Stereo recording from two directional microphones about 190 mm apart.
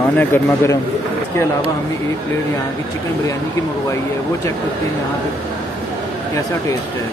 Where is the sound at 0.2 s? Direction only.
15° left (ahead or behind).